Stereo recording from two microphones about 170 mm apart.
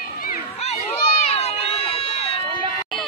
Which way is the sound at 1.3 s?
35° left (ahead or behind).